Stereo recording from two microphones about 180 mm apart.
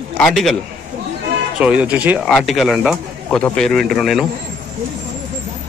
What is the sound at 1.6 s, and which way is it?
A man's voice, 5° right (ahead or behind).